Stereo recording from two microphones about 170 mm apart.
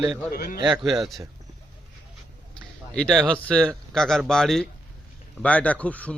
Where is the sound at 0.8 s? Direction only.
Centre (ahead or behind).